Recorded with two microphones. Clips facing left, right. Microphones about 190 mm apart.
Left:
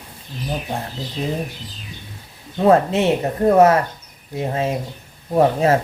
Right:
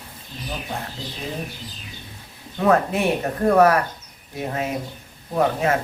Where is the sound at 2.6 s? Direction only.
25° left (ahead or behind).